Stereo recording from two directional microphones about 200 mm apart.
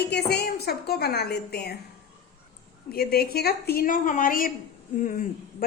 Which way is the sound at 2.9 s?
50° left (ahead or behind).